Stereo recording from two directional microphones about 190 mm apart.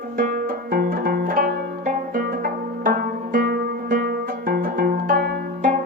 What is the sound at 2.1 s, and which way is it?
Zither, 50° right (ahead or behind).